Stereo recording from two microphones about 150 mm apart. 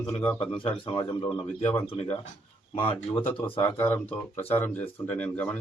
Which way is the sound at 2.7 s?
35° left (ahead or behind).